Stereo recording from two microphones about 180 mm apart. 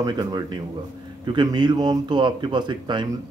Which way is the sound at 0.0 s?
20° right (ahead or behind).